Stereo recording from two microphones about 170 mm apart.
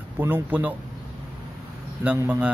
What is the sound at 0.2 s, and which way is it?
Speech, 10° right (ahead or behind).